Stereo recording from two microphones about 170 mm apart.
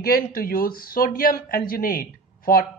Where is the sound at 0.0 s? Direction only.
60° left (ahead or behind).